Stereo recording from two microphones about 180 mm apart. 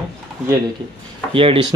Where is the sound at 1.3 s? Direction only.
30° right (ahead or behind).